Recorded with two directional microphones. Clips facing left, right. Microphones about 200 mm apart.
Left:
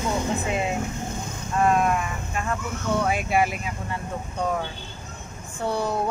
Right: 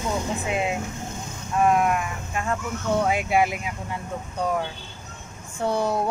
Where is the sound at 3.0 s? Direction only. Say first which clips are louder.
Even; 15° right (ahead or behind).